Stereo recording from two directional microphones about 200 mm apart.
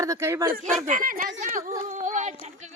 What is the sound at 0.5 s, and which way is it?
Speech, 40° right (ahead or behind).